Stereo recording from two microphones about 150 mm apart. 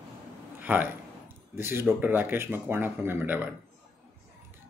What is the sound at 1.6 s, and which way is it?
Speech, 15° right (ahead or behind).